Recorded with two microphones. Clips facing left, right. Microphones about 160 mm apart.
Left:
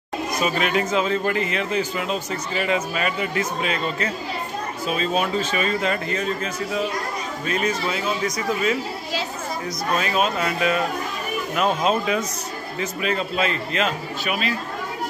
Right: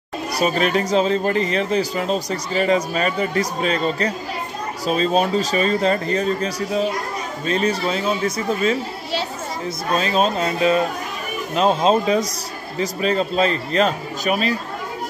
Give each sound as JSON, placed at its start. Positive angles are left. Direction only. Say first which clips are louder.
{"t": 0.3, "sound": "speech", "louder": "right 4 dB", "side_deg": -35}
{"t": 9.9, "sound": "speech", "louder": "right 4 dB", "side_deg": -30}